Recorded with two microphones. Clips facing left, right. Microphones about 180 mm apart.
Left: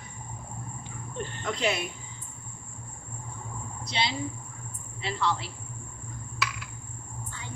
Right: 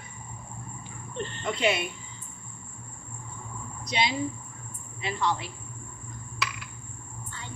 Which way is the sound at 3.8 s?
15° right (ahead or behind).